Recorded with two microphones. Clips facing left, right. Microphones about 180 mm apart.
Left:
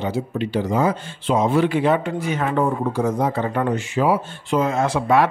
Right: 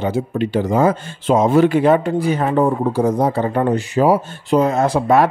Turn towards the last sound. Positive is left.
turn(degrees=-40)  # may be behind; listen again after turning